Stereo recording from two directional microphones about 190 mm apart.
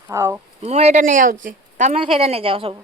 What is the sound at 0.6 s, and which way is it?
A woman's voice, 35° right (ahead or behind).